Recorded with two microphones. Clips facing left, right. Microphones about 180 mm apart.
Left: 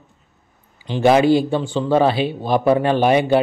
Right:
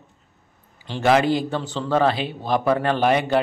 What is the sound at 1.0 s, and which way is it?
Speech, 25° left (ahead or behind).